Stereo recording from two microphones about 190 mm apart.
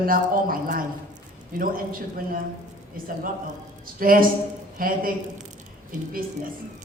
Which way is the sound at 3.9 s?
50° right (ahead or behind).